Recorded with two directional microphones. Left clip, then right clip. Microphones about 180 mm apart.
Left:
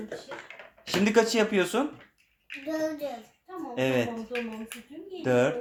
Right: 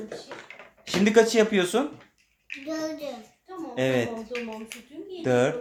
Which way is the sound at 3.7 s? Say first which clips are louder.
Right 2 dB; 10° right (ahead or behind).